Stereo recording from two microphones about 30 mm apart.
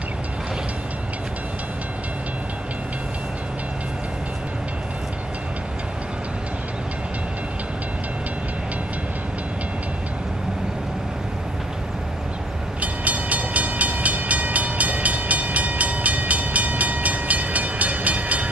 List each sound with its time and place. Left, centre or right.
12.8 s train: right